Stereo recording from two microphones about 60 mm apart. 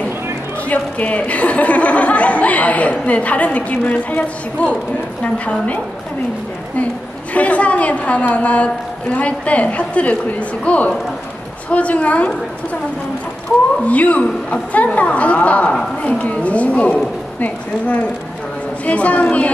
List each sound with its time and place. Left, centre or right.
0.7 s speech: left
7.3 s speech: left
13.8 s speech: left